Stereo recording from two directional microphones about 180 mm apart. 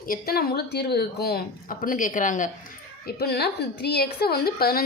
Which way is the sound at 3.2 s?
60° left (ahead or behind).